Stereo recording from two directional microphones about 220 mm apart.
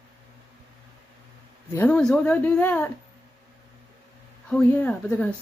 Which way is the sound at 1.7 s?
10° left (ahead or behind).